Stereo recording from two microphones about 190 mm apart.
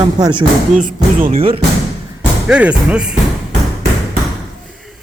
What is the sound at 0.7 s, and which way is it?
Speech, 40° right (ahead or behind).